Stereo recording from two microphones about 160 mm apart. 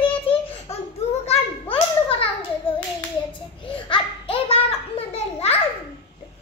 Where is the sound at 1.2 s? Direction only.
35° left (ahead or behind).